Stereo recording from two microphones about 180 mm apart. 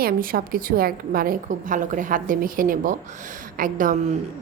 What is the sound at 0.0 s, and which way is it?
A woman's voice, 55° right (ahead or behind).